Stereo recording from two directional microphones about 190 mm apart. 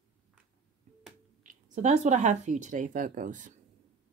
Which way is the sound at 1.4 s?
40° right (ahead or behind).